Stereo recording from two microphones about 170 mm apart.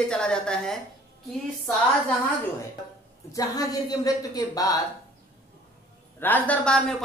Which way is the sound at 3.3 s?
20° left (ahead or behind).